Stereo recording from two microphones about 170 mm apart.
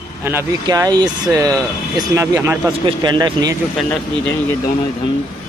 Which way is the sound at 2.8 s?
25° right (ahead or behind).